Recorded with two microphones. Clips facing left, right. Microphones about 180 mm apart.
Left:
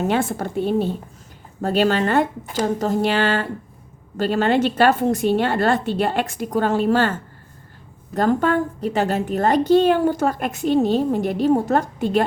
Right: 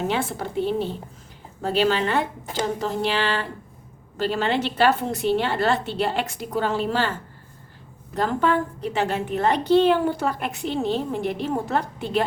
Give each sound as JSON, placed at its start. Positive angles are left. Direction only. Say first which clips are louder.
{"t": 0.1, "sound": "a woman's voice", "louder": "left 4 dB", "side_deg": 50}